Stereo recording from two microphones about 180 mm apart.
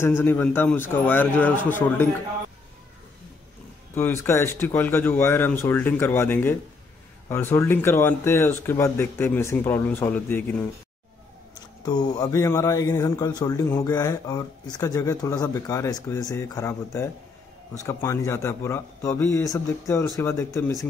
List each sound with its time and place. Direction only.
0.0 s speech: 10° left (ahead or behind)
3.9 s speech: 15° left (ahead or behind)
11.8 s speech: 25° left (ahead or behind)